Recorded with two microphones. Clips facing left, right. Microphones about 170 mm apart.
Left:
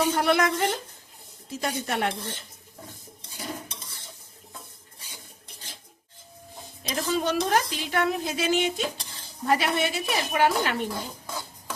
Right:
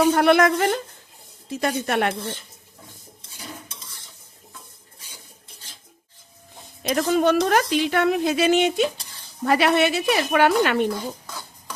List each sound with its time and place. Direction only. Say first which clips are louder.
0.1 s a woman's voice: right 6 dB; 60° right (ahead or behind)
6.8 s a woman's voice: right 7 dB; 60° right (ahead or behind)